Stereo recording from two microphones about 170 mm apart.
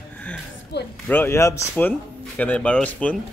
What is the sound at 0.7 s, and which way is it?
Speech, 75° left (ahead or behind).